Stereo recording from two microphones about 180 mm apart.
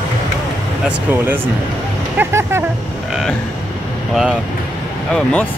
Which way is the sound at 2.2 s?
15° right (ahead or behind).